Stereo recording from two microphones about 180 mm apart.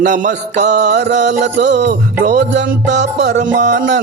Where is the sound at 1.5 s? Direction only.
70° right (ahead or behind).